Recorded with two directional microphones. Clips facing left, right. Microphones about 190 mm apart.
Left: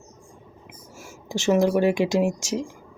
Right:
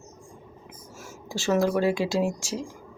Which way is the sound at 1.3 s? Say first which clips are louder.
Left 4 dB; 20° left (ahead or behind).